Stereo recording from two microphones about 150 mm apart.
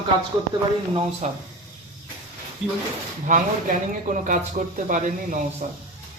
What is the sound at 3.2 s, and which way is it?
Speech, 60° right (ahead or behind).